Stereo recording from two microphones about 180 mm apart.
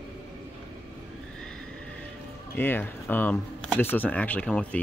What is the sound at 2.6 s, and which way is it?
Speech, 10° left (ahead or behind).